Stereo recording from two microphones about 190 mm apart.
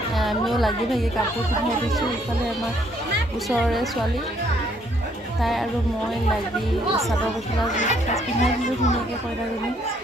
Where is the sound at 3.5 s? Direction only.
Centre (ahead or behind).